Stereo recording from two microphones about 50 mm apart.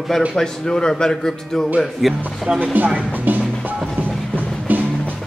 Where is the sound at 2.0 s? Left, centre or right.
Centre.